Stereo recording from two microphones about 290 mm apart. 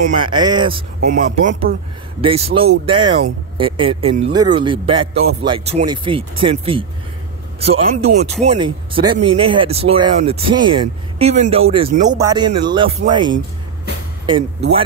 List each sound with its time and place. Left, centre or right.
0.0 s speech: centre